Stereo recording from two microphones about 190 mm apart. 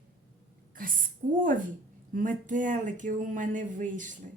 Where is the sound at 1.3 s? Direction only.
45° right (ahead or behind).